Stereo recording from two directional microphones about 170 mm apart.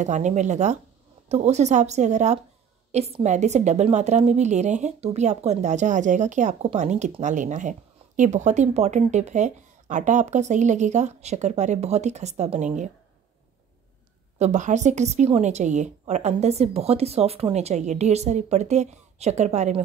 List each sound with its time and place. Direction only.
0.0 s a woman's voice: 45° right (ahead or behind)
14.4 s a woman's voice: 45° right (ahead or behind)